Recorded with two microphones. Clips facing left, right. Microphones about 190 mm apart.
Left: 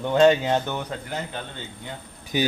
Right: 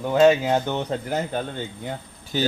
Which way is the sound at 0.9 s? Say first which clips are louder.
Right 6 dB; 45° right (ahead or behind).